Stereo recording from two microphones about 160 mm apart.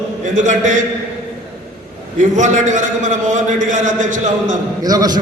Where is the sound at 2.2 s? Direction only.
50° right (ahead or behind).